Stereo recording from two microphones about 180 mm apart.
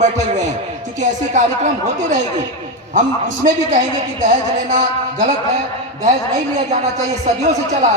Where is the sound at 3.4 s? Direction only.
45° right (ahead or behind).